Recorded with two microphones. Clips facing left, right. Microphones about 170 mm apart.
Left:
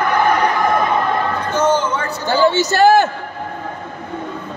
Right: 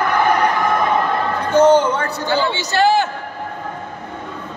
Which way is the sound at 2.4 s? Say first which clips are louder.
Left 7 dB; 45° left (ahead or behind).